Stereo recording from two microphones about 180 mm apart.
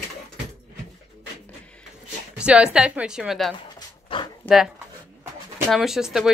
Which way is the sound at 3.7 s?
25° left (ahead or behind).